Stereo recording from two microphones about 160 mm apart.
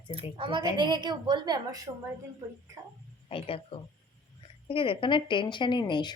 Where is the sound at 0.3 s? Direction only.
30° right (ahead or behind).